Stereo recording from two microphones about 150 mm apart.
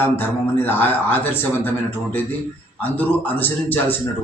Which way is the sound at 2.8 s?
10° left (ahead or behind).